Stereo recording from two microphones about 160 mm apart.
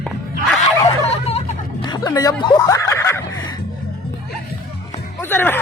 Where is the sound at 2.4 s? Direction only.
20° left (ahead or behind).